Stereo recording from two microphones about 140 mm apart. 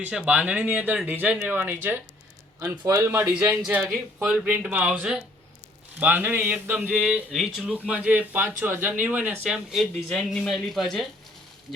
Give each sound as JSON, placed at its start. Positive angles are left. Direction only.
{"t": 0.0, "sound": "speech", "side_deg": -5}